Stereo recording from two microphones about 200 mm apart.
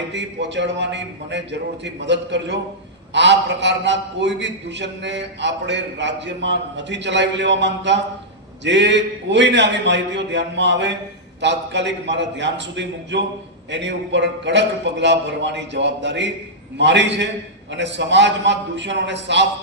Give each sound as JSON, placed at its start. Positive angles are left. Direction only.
{"t": 0.1, "sound": "a man's voice", "side_deg": -60}